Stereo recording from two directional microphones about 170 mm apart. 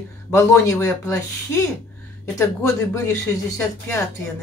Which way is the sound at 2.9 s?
15° left (ahead or behind).